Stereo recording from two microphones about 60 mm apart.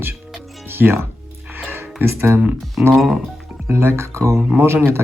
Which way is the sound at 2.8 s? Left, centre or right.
Right.